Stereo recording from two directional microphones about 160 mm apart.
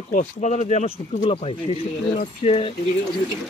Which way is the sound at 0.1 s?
50° left (ahead or behind).